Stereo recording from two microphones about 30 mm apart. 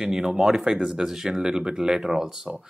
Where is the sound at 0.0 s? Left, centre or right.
Centre.